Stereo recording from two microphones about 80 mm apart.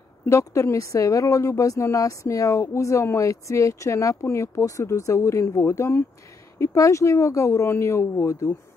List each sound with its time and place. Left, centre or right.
0.3 s speech: left